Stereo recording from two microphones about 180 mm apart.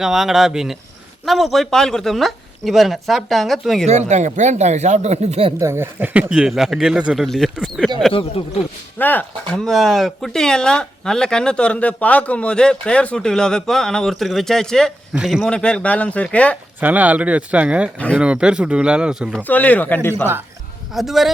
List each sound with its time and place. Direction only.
0.0 s speech: centre (ahead or behind)
3.8 s speech: 40° right (ahead or behind)
5.5 s speech: 15° right (ahead or behind)
9.0 s speech: 10° left (ahead or behind)
16.8 s speech: 10° right (ahead or behind)
19.5 s speech: 10° left (ahead or behind)
20.9 s speech: centre (ahead or behind)